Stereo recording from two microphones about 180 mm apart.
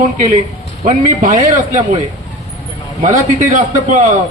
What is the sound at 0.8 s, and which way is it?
Speech, 45° right (ahead or behind).